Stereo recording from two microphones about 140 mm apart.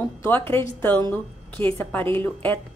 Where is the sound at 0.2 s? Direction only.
15° left (ahead or behind).